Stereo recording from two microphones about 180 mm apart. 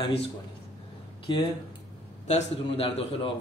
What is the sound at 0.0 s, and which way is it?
Speech, 30° left (ahead or behind).